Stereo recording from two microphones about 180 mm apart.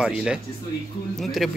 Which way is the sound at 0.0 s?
5° right (ahead or behind).